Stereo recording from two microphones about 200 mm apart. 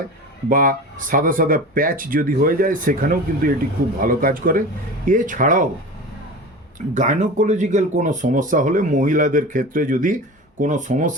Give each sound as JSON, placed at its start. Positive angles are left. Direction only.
{"t": 0.4, "sound": "speech", "side_deg": -45}
{"t": 6.7, "sound": "speech", "side_deg": -40}